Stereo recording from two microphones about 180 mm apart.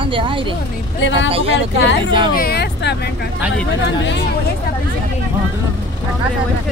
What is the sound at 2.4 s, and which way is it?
Speech, 60° left (ahead or behind).